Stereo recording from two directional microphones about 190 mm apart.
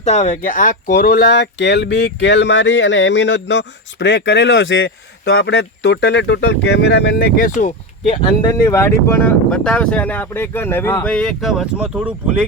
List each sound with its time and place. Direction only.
0.0 s speech: 35° left (ahead or behind)
8.4 s speech: 20° left (ahead or behind); by 12.5 s 5° right (ahead or behind)